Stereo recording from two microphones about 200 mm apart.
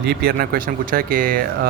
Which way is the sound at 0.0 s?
55° right (ahead or behind).